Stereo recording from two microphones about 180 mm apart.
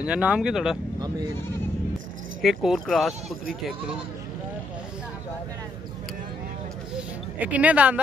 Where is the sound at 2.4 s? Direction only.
Centre (ahead or behind).